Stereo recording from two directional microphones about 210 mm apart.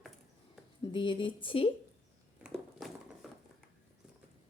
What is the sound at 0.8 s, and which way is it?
Speech, 25° left (ahead or behind).